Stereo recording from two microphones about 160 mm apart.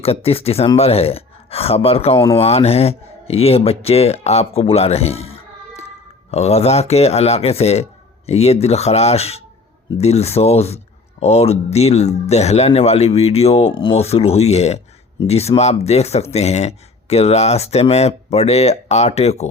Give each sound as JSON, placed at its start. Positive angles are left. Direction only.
{"t": 0.0, "sound": "speech", "side_deg": 40}